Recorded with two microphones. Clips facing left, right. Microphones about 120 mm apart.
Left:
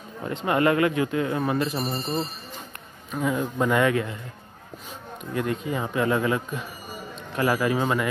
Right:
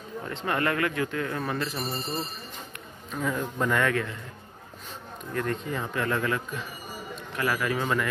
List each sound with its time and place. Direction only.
0.2 s speech: 15° left (ahead or behind)
3.1 s speech: 10° left (ahead or behind)
5.3 s a man's voice: 10° left (ahead or behind)